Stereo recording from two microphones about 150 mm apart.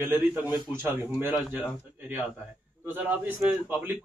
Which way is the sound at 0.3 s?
10° right (ahead or behind).